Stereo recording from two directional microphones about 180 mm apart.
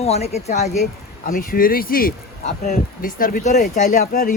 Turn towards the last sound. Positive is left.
turn(degrees=50)  # may be behind; listen again after turning